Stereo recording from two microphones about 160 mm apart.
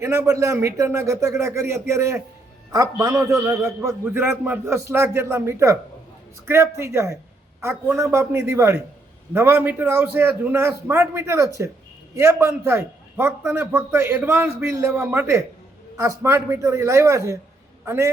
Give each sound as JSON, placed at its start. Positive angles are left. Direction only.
{"t": 0.0, "sound": "a man's voice", "side_deg": -20}